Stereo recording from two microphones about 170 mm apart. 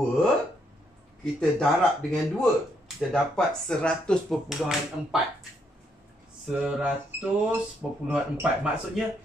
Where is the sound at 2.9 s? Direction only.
5° left (ahead or behind).